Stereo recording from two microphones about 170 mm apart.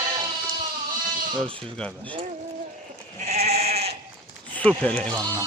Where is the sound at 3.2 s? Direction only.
40° right (ahead or behind).